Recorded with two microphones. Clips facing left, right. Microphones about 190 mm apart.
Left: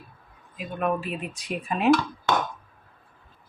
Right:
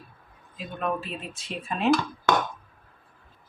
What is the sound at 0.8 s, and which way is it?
Speech, 10° left (ahead or behind).